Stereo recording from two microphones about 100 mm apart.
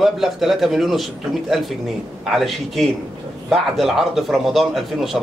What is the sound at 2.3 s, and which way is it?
A man's voice, centre (ahead or behind).